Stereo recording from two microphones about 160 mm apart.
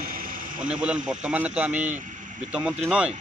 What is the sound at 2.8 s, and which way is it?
Speech, 5° right (ahead or behind).